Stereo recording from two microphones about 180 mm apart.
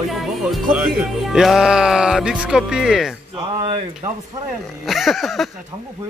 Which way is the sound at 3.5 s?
25° right (ahead or behind).